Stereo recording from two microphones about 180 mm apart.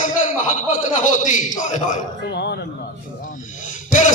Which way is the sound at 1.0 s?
45° left (ahead or behind).